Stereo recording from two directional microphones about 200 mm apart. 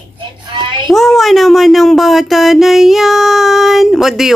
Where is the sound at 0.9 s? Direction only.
Centre (ahead or behind).